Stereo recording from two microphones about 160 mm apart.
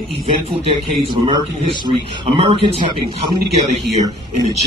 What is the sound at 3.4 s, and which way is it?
Speech, centre (ahead or behind).